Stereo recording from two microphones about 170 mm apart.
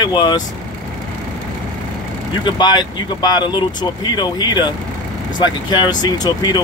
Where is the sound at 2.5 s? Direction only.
25° left (ahead or behind).